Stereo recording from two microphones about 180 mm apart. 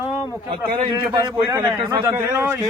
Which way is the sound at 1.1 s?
25° right (ahead or behind).